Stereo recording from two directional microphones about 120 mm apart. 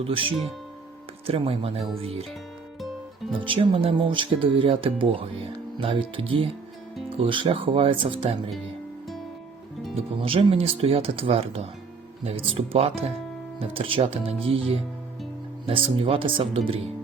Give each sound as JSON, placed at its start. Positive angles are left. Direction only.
{"t": 0.0, "sound": "speech", "side_deg": -50}
{"t": 3.3, "sound": "speech", "side_deg": -45}
{"t": 9.9, "sound": "speech", "side_deg": -55}